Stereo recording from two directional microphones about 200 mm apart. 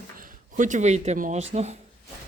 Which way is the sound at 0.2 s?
40° right (ahead or behind).